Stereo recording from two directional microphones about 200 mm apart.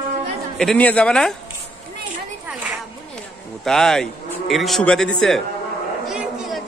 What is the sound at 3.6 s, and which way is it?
Speech, centre (ahead or behind).